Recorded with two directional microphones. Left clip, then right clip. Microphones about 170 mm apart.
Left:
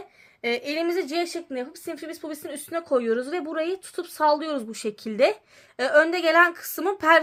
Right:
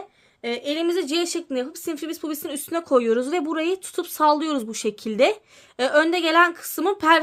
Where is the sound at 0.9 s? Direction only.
35° right (ahead or behind).